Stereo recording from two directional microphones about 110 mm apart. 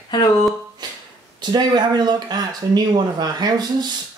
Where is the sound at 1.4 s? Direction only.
40° right (ahead or behind).